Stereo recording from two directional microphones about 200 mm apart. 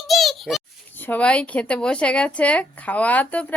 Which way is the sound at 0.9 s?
10° left (ahead or behind).